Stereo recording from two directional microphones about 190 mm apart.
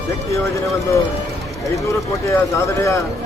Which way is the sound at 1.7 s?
15° left (ahead or behind).